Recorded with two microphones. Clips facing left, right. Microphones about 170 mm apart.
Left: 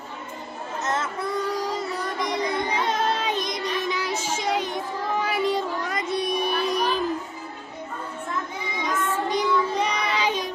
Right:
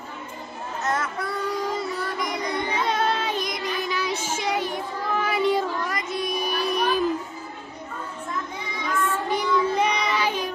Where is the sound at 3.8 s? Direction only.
15° left (ahead or behind).